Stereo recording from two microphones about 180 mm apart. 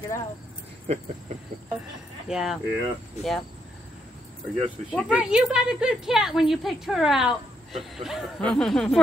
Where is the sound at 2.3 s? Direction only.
5° right (ahead or behind).